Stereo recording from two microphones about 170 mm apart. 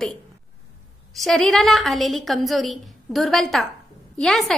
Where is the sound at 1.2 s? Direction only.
Centre (ahead or behind).